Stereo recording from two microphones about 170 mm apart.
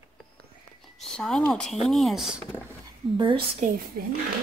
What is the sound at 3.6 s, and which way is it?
Speech, 45° right (ahead or behind).